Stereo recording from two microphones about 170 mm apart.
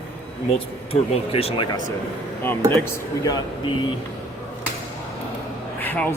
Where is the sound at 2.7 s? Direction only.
20° left (ahead or behind).